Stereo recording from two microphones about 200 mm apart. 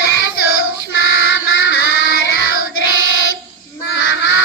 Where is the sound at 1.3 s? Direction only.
70° left (ahead or behind).